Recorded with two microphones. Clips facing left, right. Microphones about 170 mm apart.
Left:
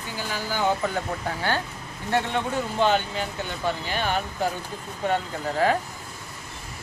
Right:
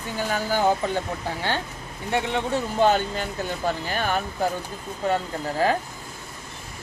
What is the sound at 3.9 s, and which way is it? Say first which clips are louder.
Speech: even; 45° right (ahead or behind).